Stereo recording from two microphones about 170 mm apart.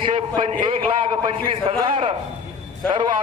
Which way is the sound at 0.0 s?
30° right (ahead or behind).